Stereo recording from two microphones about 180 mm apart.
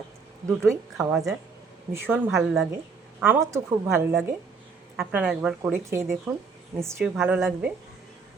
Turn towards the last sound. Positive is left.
turn(degrees=-5)  # may be behind; listen again after turning